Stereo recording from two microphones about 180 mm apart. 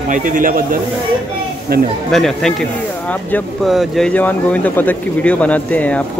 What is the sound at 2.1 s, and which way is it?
Speech, centre (ahead or behind).